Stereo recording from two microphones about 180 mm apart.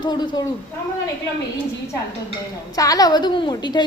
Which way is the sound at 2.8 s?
20° left (ahead or behind).